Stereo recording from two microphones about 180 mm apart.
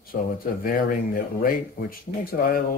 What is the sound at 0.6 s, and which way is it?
Speech, 50° left (ahead or behind).